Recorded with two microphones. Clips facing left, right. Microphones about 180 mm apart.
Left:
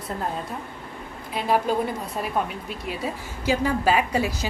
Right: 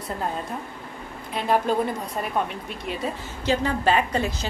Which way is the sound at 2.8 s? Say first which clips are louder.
Right 1 dB; 5° left (ahead or behind).